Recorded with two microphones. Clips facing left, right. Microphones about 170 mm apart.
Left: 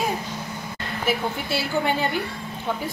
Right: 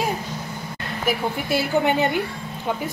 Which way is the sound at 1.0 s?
15° right (ahead or behind).